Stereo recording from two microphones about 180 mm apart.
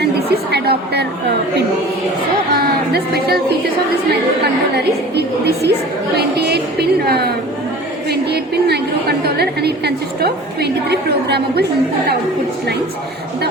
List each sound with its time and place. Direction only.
0.0 s a woman's voice: 65° right (ahead or behind)
2.5 s speech: 60° right (ahead or behind)
4.8 s a woman's voice: 65° right (ahead or behind)